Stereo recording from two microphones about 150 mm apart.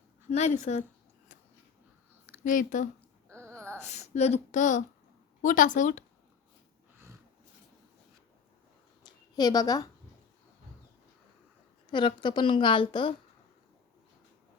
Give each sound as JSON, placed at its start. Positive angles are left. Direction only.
{"t": 0.3, "sound": "speech", "side_deg": 50}
{"t": 2.4, "sound": "a woman's voice", "side_deg": 60}
{"t": 3.2, "sound": "a sound", "side_deg": -15}
{"t": 3.8, "sound": "a woman's voice", "side_deg": 50}
{"t": 9.0, "sound": "a woman's voice", "side_deg": 25}
{"t": 11.9, "sound": "a woman's voice", "side_deg": 30}